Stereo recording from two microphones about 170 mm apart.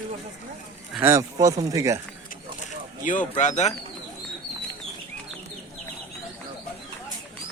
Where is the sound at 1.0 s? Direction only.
15° right (ahead or behind).